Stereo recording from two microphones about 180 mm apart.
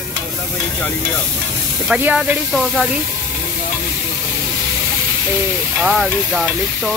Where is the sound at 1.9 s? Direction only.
5° right (ahead or behind).